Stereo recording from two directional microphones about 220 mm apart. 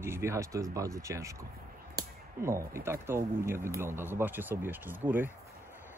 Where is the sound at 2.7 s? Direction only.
10° right (ahead or behind).